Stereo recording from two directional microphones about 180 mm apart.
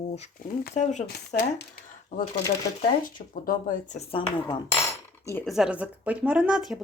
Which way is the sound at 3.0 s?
50° left (ahead or behind).